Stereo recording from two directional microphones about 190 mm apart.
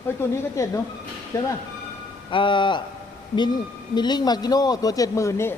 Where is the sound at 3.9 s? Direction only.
20° left (ahead or behind).